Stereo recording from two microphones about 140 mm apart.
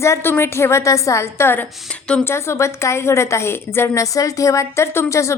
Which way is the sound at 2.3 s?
20° left (ahead or behind).